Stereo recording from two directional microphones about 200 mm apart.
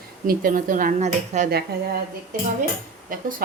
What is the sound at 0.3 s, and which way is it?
Speech, 45° right (ahead or behind).